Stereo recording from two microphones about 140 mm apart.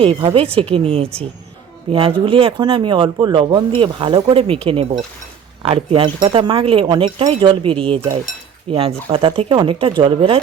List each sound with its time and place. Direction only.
0.0 s speech: 40° right (ahead or behind)